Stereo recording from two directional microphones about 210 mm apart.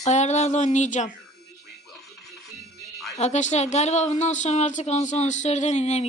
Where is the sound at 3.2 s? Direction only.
35° left (ahead or behind).